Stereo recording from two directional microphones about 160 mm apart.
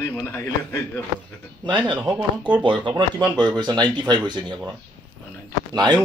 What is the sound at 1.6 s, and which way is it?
Speech, 30° right (ahead or behind).